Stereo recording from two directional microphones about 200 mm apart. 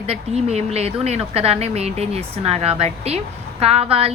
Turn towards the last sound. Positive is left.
turn(degrees=-30)  # may be behind; listen again after turning